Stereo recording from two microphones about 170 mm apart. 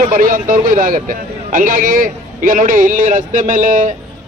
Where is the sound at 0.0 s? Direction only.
55° right (ahead or behind).